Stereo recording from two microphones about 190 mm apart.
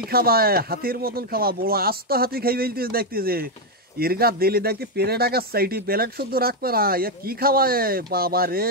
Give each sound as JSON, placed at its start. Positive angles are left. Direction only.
{"t": 0.1, "sound": "speech", "side_deg": -50}